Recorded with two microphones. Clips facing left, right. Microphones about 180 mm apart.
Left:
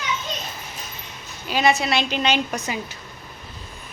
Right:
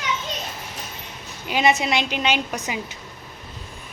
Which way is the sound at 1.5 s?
20° right (ahead or behind).